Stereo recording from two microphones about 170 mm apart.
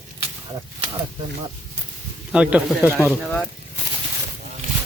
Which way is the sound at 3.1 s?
Centre (ahead or behind).